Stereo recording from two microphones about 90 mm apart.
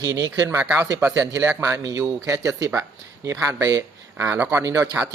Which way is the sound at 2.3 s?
35° right (ahead or behind).